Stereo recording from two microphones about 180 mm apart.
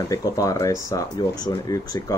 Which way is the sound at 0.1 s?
20° left (ahead or behind).